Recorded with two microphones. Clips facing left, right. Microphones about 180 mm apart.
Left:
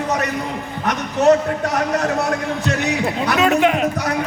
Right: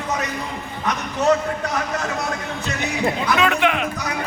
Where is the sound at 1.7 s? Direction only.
60° left (ahead or behind).